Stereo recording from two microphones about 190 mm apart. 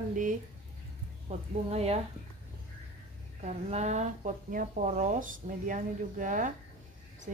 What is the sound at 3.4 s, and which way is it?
Speech, 35° right (ahead or behind).